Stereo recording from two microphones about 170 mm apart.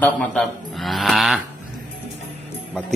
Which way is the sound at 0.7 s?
Centre (ahead or behind).